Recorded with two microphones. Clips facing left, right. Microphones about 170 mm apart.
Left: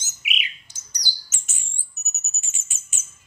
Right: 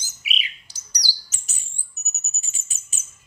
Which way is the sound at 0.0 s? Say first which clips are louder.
Even; 35° right (ahead or behind).